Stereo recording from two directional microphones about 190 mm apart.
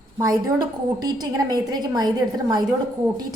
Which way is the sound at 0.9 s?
20° right (ahead or behind).